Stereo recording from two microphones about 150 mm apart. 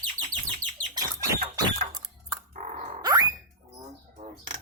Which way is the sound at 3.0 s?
25° right (ahead or behind).